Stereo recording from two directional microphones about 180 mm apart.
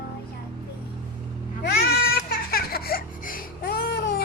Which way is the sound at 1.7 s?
55° left (ahead or behind).